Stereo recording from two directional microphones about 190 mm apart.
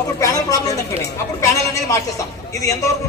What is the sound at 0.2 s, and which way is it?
A man's voice, 20° left (ahead or behind).